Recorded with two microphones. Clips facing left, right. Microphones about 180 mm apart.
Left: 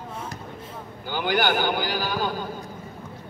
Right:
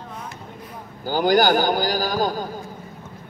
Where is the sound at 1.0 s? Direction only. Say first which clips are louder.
Right 6 dB; 40° right (ahead or behind).